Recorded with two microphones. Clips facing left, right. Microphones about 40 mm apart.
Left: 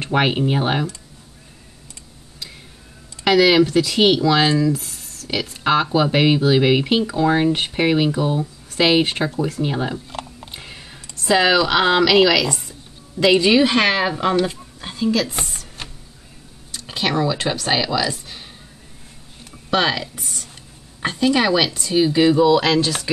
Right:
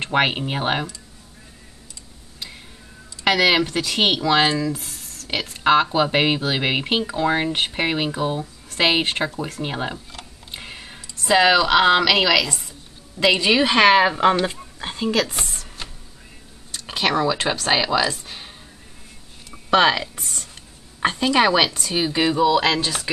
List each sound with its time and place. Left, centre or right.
0.0 s speech: centre
3.3 s speech: centre
10.5 s a sound: centre
11.2 s speech: centre; by 15.3 s right
16.8 s speech: centre
19.7 s speech: centre
21.0 s speech: right